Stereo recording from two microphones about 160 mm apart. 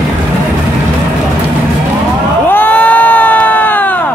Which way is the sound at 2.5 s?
10° left (ahead or behind).